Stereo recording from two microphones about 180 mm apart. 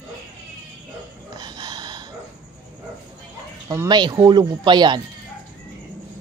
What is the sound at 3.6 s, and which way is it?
Speech, 20° right (ahead or behind).